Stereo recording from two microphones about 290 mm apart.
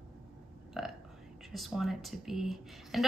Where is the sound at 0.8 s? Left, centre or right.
Centre.